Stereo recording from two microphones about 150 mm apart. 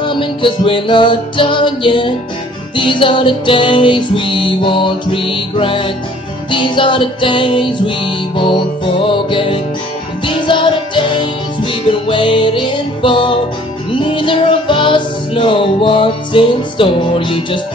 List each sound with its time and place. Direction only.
0.0 s music: 35° left (ahead or behind)